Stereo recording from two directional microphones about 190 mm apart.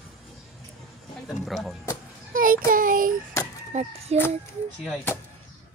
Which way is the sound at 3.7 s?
40° right (ahead or behind).